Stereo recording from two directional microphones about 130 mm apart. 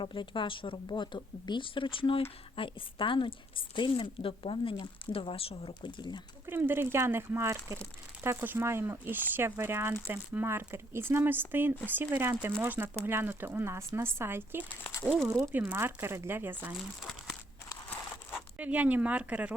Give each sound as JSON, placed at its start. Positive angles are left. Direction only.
{"t": 0.0, "sound": "a woman's voice", "side_deg": 40}
{"t": 6.4, "sound": "speech", "side_deg": -15}
{"t": 18.5, "sound": "speech", "side_deg": -10}